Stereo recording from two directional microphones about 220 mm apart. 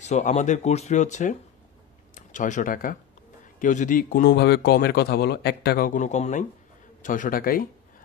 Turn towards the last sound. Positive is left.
turn(degrees=40)  # may be behind; listen again after turning